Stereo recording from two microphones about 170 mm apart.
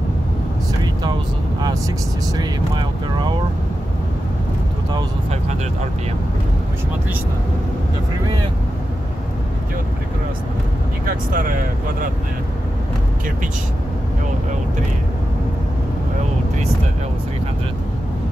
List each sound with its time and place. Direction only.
2.3 s speech: 25° right (ahead or behind)
11.1 s speech: 55° right (ahead or behind)